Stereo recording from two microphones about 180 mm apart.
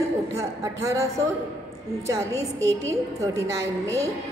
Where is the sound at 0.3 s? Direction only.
15° right (ahead or behind).